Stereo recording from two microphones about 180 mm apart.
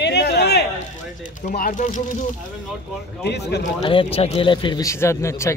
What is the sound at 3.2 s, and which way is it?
Speech, 70° left (ahead or behind).